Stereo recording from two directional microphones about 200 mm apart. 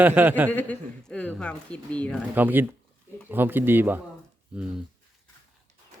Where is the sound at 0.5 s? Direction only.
5° left (ahead or behind).